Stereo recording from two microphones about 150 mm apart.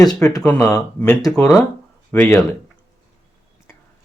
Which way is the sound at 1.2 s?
25° left (ahead or behind).